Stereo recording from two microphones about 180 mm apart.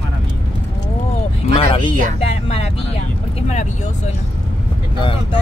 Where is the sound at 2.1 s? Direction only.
35° left (ahead or behind).